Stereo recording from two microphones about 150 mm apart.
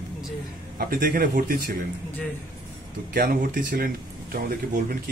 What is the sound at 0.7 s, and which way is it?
Speech, 80° right.